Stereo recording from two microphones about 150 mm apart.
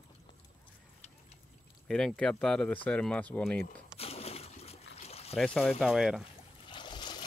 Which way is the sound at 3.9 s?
40° left (ahead or behind).